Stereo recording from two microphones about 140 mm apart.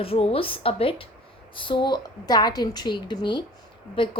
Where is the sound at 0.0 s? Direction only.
45° left (ahead or behind).